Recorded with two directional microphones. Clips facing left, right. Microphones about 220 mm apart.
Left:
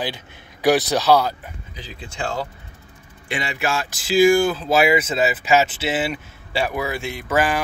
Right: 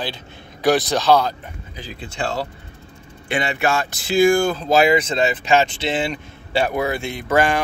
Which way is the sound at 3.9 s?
60° right (ahead or behind).